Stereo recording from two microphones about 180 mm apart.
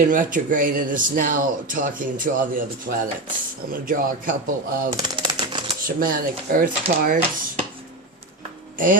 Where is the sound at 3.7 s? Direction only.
50° right (ahead or behind).